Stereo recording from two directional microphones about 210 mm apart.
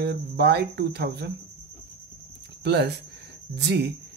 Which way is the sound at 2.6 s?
50° right (ahead or behind).